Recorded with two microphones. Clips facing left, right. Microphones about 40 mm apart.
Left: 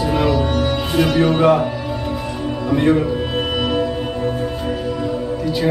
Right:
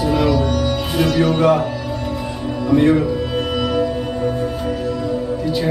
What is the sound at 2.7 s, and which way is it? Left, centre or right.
Speech, centre.